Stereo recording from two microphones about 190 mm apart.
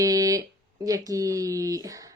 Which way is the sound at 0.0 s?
20° right (ahead or behind).